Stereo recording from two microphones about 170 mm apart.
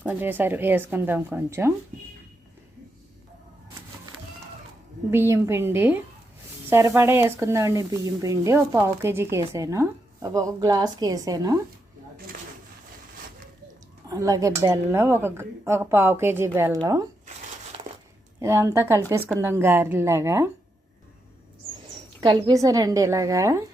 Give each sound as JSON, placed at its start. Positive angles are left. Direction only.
{"t": 0.0, "sound": "speech", "side_deg": -10}
{"t": 5.1, "sound": "a woman's voice", "side_deg": -15}
{"t": 12.1, "sound": "a sound", "side_deg": -60}
{"t": 14.1, "sound": "a woman's voice", "side_deg": -20}
{"t": 17.2, "sound": "crumpling", "side_deg": -45}
{"t": 18.3, "sound": "speech", "side_deg": -15}
{"t": 22.2, "sound": "a woman's voice", "side_deg": -25}